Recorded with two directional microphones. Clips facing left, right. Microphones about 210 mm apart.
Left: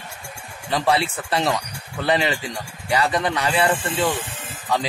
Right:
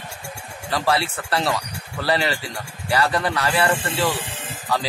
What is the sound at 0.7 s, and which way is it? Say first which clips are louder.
Speech: left 1 dB; 20° left (ahead or behind).